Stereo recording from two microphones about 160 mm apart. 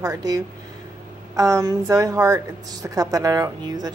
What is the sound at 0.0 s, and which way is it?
A woman's voice, 25° right (ahead or behind).